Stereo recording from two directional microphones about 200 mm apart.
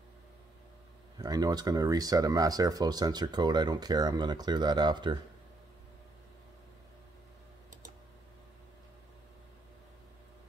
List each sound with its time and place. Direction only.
1.1 s speech: 20° right (ahead or behind)